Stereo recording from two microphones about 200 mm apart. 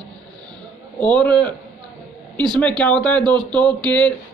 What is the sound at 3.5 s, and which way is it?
Speech, 5° left (ahead or behind).